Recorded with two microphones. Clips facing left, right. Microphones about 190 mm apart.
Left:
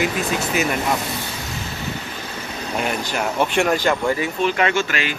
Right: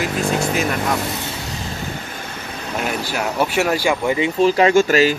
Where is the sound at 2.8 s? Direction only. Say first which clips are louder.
Even; 5° right (ahead or behind).